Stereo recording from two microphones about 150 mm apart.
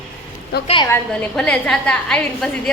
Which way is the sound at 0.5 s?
90° left.